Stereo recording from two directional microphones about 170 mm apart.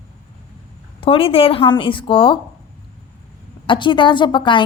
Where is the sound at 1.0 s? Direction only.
35° left (ahead or behind).